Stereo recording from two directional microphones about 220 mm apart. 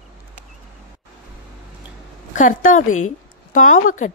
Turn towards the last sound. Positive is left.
turn(degrees=35)  # may be behind; listen again after turning